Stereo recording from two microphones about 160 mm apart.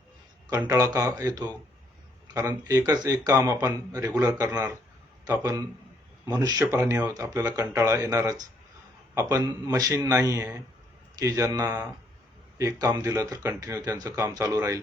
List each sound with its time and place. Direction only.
0.5 s a man's voice: 20° right (ahead or behind)
6.7 s speech: 10° right (ahead or behind)